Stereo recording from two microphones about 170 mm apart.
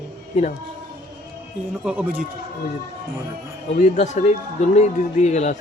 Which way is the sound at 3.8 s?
45° left (ahead or behind).